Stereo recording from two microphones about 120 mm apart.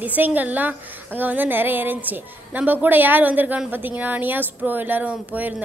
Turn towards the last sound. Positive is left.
turn(degrees=-15)  # may be behind; listen again after turning